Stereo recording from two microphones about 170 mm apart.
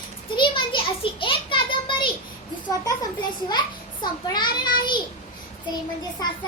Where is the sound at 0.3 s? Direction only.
30° left (ahead or behind).